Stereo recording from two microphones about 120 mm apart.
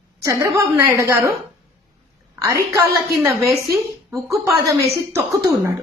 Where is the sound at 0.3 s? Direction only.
25° right (ahead or behind).